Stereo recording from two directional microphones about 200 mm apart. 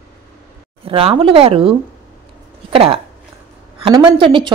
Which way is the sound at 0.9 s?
30° right (ahead or behind).